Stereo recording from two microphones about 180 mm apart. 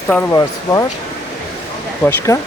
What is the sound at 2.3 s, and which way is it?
Speech, 15° left (ahead or behind).